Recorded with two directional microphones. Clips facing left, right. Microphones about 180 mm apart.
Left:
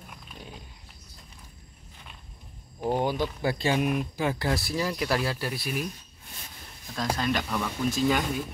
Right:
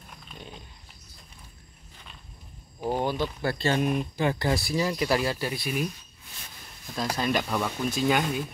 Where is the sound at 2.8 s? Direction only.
15° left (ahead or behind).